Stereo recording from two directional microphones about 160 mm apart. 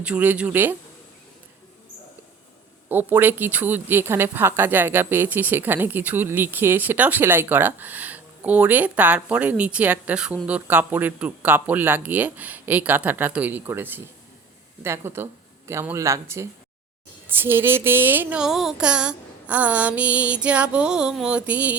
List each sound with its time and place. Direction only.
0.0 s speech: 10° right (ahead or behind)
2.9 s speech: 10° right (ahead or behind)